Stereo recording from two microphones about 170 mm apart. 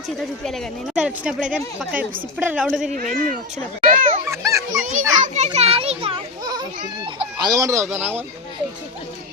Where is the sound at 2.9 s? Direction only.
50° right (ahead or behind).